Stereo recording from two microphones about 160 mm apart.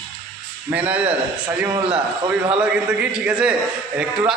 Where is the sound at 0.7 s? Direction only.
10° right (ahead or behind).